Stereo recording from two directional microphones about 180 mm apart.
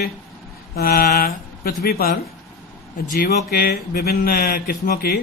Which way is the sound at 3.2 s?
55° left (ahead or behind).